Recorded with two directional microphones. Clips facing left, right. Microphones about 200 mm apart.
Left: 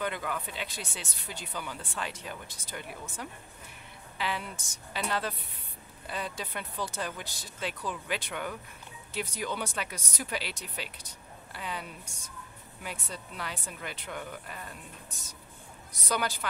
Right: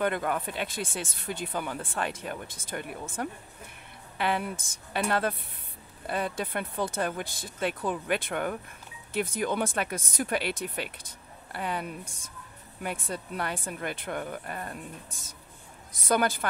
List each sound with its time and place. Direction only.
0.0 s a woman's voice: 55° right (ahead or behind)